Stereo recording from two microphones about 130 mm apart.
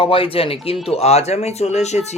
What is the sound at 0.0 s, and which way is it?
Speech, 45° left (ahead or behind).